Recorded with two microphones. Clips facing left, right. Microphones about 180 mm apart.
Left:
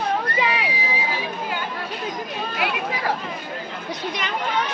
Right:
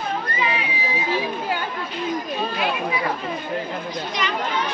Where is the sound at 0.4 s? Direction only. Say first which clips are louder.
Left 2 dB; 75° left (ahead or behind).